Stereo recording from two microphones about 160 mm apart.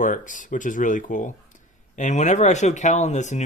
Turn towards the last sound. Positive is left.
turn(degrees=45)  # may be behind; listen again after turning